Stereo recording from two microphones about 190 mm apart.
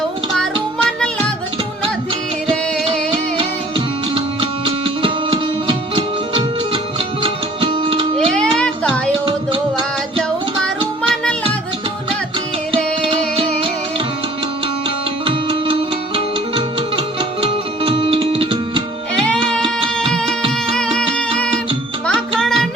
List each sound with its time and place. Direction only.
3.1 s music: 25° right (ahead or behind)
8.4 s music: 5° left (ahead or behind)
9.2 s music: 30° right (ahead or behind)
13.0 s music: 30° right (ahead or behind)
15.3 s music: 25° right (ahead or behind)
19.3 s music: 5° left (ahead or behind)